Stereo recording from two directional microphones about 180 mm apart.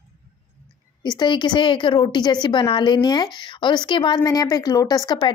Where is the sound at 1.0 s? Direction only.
25° left (ahead or behind).